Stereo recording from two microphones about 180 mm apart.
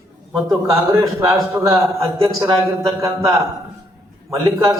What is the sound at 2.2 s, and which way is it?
A man's voice, 20° right (ahead or behind).